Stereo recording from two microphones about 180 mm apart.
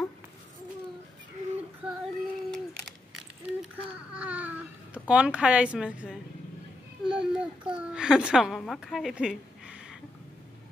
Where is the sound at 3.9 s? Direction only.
5° right (ahead or behind).